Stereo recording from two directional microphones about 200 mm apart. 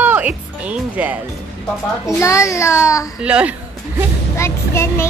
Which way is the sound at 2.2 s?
15° left (ahead or behind).